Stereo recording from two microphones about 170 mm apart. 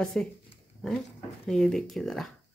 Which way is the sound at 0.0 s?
5° left (ahead or behind).